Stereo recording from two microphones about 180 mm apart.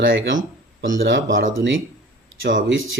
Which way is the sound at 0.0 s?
90° right.